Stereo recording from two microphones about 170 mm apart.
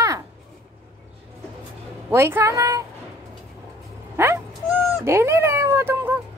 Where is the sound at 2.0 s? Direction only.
15° right (ahead or behind).